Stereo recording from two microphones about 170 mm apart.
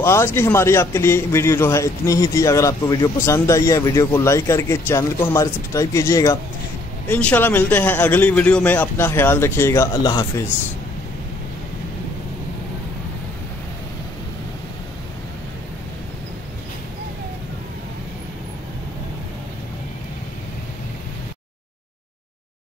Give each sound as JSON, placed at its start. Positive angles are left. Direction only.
{"t": 0.0, "sound": "speech", "side_deg": 15}